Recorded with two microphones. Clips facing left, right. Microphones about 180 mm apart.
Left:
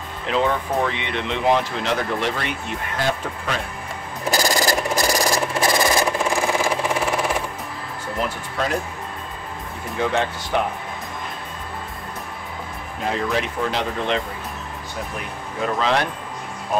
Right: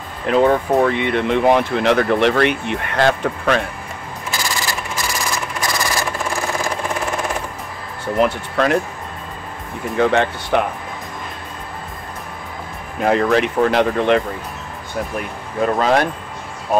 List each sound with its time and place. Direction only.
0.3 s speech: 45° right (ahead or behind); by 3.6 s 70° right (ahead or behind)
4.3 s a sound: 40° left (ahead or behind); by 7.2 s 10° left (ahead or behind)
8.2 s speech: 70° right (ahead or behind)
9.9 s speech: 60° right (ahead or behind)
13.0 s speech: 65° right (ahead or behind)
15.6 s speech: 45° right (ahead or behind)